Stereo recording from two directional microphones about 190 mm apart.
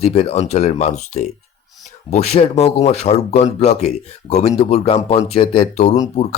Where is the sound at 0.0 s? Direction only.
30° left (ahead or behind).